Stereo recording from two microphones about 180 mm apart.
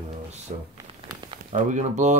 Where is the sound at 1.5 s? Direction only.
40° right (ahead or behind).